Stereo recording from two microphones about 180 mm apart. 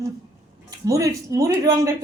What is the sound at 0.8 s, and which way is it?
A woman's voice, 20° right (ahead or behind).